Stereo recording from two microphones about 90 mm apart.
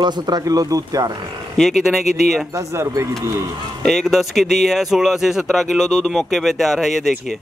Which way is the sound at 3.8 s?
5° left (ahead or behind).